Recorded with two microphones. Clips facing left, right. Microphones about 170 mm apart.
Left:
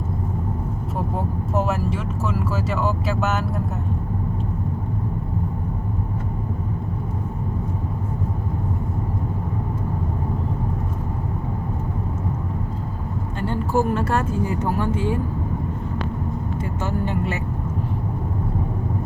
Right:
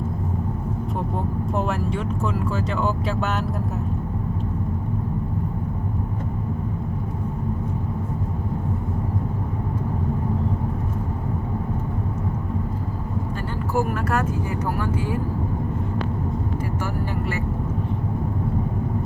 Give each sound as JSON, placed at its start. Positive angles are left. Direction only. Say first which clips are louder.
{"t": 1.5, "sound": "speech", "louder": "left 3 dB", "side_deg": 5}
{"t": 13.7, "sound": "speech", "louder": "left 2 dB", "side_deg": 25}